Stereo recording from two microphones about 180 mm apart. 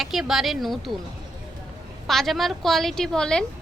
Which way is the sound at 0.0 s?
Centre (ahead or behind).